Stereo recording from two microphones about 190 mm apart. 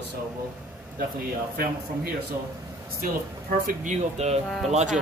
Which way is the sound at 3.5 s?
45° right (ahead or behind).